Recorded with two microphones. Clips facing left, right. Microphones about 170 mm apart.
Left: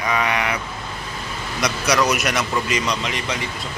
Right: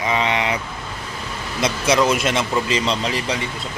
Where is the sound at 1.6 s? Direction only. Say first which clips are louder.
Right 2 dB; 25° right (ahead or behind).